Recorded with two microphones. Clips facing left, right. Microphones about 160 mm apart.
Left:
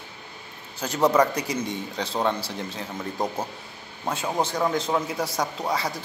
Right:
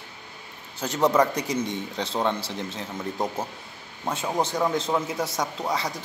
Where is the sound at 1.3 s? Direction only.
20° right (ahead or behind).